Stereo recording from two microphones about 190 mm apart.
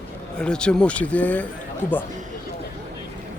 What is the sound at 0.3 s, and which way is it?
Speech, 5° left (ahead or behind).